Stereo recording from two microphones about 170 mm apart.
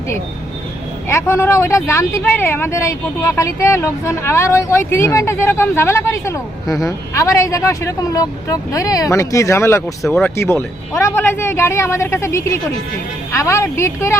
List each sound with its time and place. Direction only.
1.0 s speech: 15° left (ahead or behind)